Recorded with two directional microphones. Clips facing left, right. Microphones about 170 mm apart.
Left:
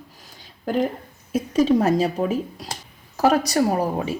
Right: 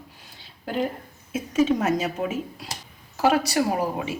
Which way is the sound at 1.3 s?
35° left (ahead or behind).